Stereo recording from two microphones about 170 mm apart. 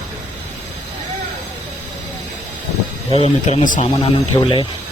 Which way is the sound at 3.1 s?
40° left (ahead or behind).